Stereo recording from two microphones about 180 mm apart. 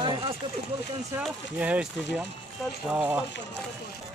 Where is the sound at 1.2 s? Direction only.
5° right (ahead or behind).